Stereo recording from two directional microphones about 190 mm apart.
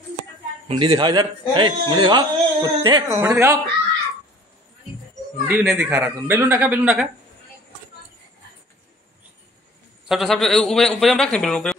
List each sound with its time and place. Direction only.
0.7 s a man's voice: 25° right (ahead or behind)
5.5 s speech: 10° right (ahead or behind)
10.0 s a man's voice: centre (ahead or behind)